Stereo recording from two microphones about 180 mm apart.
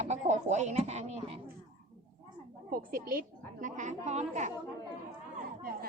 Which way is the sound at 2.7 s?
55° right (ahead or behind).